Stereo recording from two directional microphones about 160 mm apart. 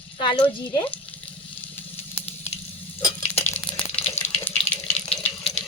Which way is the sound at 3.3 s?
10° left (ahead or behind).